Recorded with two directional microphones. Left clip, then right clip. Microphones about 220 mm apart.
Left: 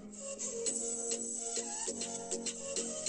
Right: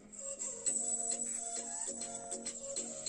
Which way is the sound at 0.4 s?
40° left (ahead or behind).